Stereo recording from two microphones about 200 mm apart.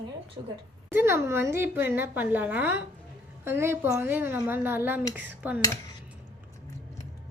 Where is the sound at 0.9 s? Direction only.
10° right (ahead or behind).